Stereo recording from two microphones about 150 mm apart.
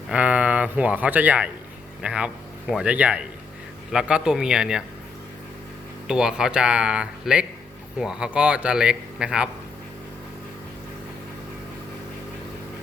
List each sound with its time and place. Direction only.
0.1 s speech: 10° right (ahead or behind)
6.1 s speech: 5° right (ahead or behind)